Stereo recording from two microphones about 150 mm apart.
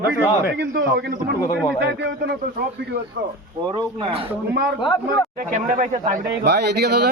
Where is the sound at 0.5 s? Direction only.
90° right.